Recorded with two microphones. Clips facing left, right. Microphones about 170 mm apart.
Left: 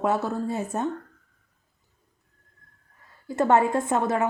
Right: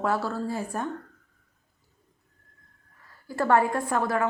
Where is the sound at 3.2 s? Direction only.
20° left (ahead or behind).